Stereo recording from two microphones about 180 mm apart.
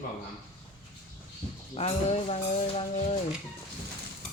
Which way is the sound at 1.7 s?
35° left (ahead or behind).